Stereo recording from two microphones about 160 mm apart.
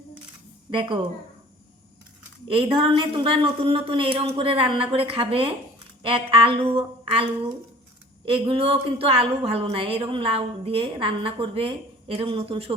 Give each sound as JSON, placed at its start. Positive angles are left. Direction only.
{"t": 0.7, "sound": "speech", "side_deg": -30}
{"t": 2.5, "sound": "a woman's voice", "side_deg": -35}